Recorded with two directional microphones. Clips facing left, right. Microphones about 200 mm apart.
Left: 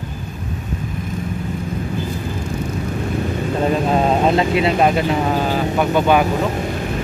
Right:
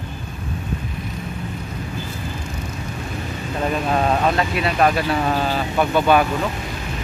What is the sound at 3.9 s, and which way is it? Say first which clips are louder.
Speech: left 2 dB; 25° left (ahead or behind).